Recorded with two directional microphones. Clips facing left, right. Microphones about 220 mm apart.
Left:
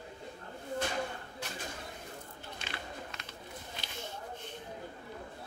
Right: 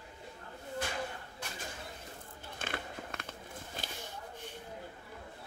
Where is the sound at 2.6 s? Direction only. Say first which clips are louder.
Right 4 dB; 50° right (ahead or behind).